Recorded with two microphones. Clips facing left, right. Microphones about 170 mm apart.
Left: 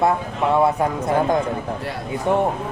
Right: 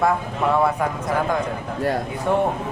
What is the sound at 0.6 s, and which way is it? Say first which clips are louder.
Speech: left 2 dB; 25° left (ahead or behind).